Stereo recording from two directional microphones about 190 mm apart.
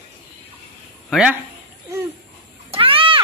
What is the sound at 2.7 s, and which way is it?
Cat, 30° right (ahead or behind).